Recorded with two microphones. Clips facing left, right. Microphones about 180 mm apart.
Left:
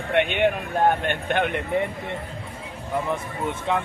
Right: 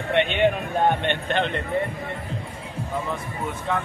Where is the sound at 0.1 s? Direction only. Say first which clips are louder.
Even; 10° left (ahead or behind).